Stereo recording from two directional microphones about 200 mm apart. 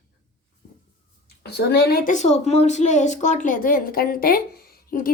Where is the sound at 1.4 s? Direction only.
55° left (ahead or behind).